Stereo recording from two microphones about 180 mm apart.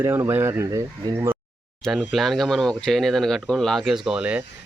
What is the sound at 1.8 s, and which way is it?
Speech, centre (ahead or behind).